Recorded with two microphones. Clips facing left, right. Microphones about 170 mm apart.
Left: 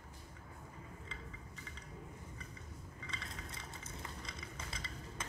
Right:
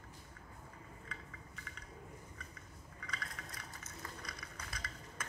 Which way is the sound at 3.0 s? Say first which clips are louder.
Right 1 dB; 25° left (ahead or behind).